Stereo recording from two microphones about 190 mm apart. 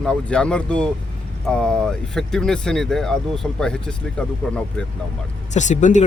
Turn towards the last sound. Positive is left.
turn(degrees=40)  # may be behind; listen again after turning